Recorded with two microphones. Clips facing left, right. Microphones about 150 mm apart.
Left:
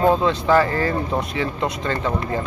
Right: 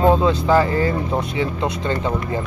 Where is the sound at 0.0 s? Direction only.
25° right (ahead or behind).